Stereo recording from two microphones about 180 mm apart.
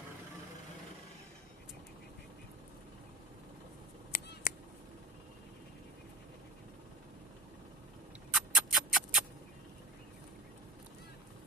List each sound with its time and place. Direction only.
4.1 s scissors: 50° left (ahead or behind)
8.3 s music: centre (ahead or behind)